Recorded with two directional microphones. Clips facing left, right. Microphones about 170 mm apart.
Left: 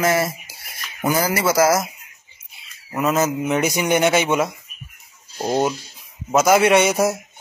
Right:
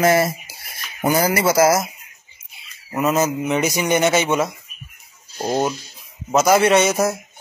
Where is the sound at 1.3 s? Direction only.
20° right (ahead or behind).